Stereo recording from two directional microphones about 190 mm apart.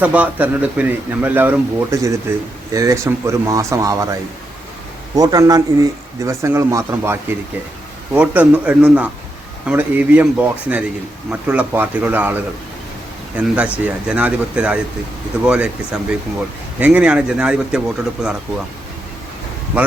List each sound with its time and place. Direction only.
0.0 s speech: 10° right (ahead or behind)
5.1 s speech: 20° right (ahead or behind); by 18.6 s 5° right (ahead or behind)